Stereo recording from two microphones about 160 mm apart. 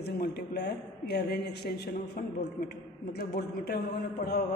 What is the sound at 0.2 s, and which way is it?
A man's voice, 90° left.